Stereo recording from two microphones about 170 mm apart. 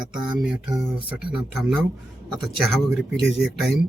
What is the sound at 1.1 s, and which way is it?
Speech, 5° right (ahead or behind).